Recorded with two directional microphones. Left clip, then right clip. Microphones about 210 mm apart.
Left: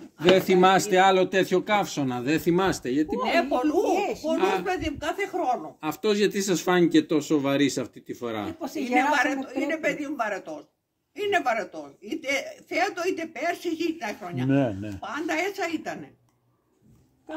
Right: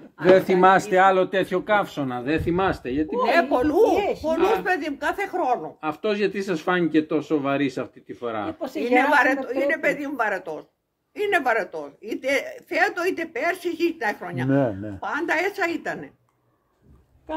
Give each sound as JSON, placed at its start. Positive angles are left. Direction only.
{"t": 0.5, "sound": "speech", "side_deg": 55}
{"t": 3.2, "sound": "speech", "side_deg": -15}
{"t": 3.9, "sound": "speech", "side_deg": 20}
{"t": 4.4, "sound": "speech", "side_deg": 60}
{"t": 4.6, "sound": "speech", "side_deg": -15}
{"t": 5.8, "sound": "speech", "side_deg": 55}
{"t": 8.5, "sound": "speech", "side_deg": 20}
{"t": 9.1, "sound": "a woman's voice", "side_deg": -20}
{"t": 14.5, "sound": "speech", "side_deg": 25}
{"t": 15.0, "sound": "a woman's voice", "side_deg": -20}